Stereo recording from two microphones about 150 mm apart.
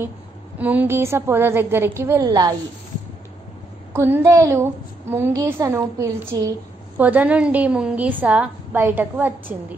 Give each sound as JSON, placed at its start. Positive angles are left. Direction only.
{"t": 0.6, "sound": "a woman's voice", "side_deg": -10}
{"t": 3.9, "sound": "a woman's voice", "side_deg": -15}
{"t": 7.0, "sound": "a woman's voice", "side_deg": -10}